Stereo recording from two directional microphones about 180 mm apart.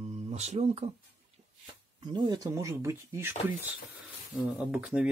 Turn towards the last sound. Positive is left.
turn(degrees=-5)  # may be behind; listen again after turning